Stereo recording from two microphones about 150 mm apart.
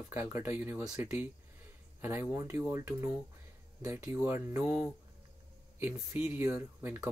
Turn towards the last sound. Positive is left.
turn(degrees=-15)  # may be behind; listen again after turning